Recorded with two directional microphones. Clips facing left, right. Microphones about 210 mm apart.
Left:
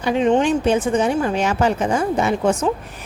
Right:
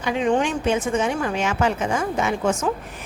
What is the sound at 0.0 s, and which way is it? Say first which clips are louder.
A woman's voice: left 4 dB; 35° left (ahead or behind).